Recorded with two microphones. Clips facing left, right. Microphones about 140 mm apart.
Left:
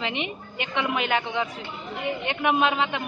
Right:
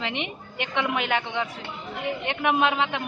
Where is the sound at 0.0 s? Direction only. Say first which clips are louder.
Left 1 dB; 5° left (ahead or behind).